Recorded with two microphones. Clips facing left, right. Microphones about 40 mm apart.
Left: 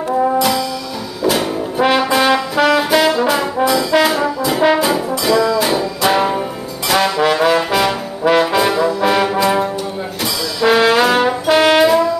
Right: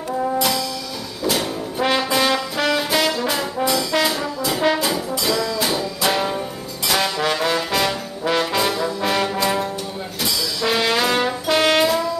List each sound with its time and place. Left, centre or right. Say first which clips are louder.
0.4 s brass instrument: left 5 dB; centre
6.9 s trombone: left 6 dB; centre